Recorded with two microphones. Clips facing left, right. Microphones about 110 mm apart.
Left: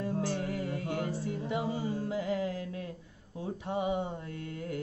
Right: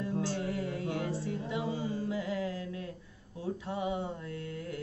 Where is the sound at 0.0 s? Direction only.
50° left (ahead or behind).